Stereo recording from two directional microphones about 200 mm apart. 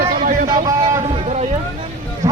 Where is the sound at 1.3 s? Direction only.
35° right (ahead or behind).